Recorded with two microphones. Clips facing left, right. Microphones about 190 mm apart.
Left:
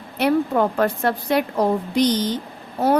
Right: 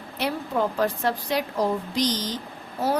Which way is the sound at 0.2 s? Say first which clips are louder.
Left 7 dB; 60° left (ahead or behind).